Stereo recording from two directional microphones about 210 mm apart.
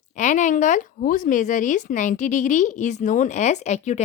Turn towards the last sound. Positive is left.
turn(degrees=35)  # may be behind; listen again after turning